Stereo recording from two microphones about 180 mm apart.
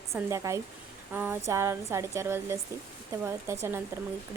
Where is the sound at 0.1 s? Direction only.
15° right (ahead or behind).